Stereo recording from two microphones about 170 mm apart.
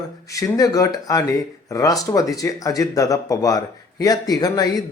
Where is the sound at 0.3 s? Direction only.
20° left (ahead or behind).